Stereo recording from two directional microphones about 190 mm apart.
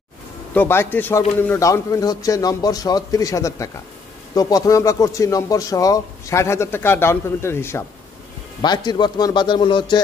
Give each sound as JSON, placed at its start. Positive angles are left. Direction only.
{"t": 0.6, "sound": "a man's voice", "side_deg": 10}